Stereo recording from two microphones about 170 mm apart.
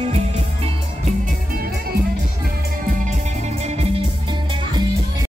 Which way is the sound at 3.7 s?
35° right (ahead or behind).